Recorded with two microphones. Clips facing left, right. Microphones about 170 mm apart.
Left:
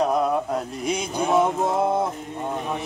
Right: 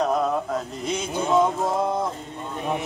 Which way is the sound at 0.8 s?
10° left (ahead or behind).